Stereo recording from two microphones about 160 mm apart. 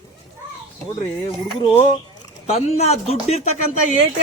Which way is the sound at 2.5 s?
40° left (ahead or behind).